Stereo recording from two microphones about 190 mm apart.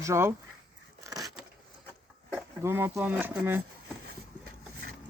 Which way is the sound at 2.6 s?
10° right (ahead or behind).